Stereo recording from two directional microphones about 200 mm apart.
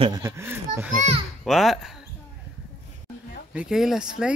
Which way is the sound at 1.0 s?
30° right (ahead or behind).